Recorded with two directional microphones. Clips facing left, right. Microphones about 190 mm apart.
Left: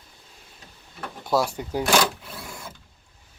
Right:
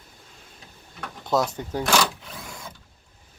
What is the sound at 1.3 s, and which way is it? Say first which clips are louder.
Sewing machine: even; 10° left (ahead or behind).